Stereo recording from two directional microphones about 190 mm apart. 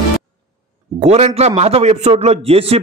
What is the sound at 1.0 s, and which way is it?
A man's voice, 35° right (ahead or behind).